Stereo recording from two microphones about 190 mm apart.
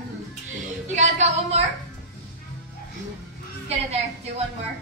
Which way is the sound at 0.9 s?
35° right (ahead or behind).